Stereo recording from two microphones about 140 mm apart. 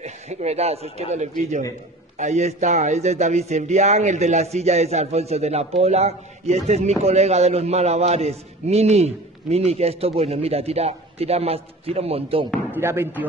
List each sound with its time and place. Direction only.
0.0 s a man's voice: 55° right (ahead or behind)
12.7 s speech: 15° right (ahead or behind)